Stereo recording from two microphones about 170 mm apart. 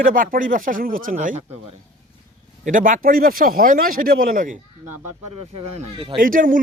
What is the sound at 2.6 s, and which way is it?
Speech, 50° right (ahead or behind).